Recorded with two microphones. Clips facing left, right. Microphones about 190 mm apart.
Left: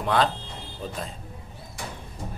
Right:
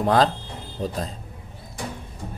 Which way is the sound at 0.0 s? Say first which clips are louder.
Right 4 dB; 40° right (ahead or behind).